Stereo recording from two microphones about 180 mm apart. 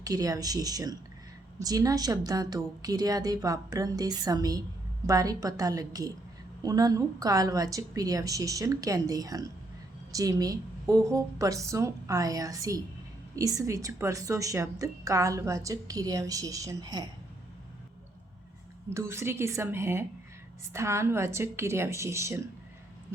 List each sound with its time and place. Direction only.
0.0 s a woman's voice: 20° right (ahead or behind)
18.9 s a woman's voice: 15° right (ahead or behind)